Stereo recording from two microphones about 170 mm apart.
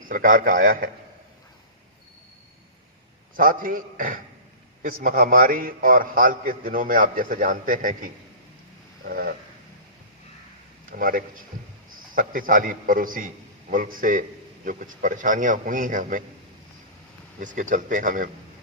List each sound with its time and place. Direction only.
0.0 s a man's voice: 55° right (ahead or behind)
3.3 s a man's voice: 55° right (ahead or behind)
10.9 s a man's voice: 55° right (ahead or behind)
17.4 s a man's voice: 50° right (ahead or behind)